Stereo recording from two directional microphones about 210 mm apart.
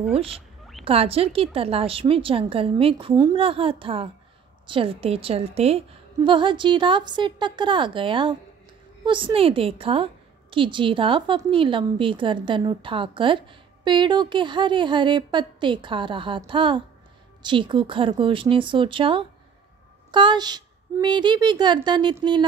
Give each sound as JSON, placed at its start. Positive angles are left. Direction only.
{"t": 0.1, "sound": "a woman's voice", "side_deg": -25}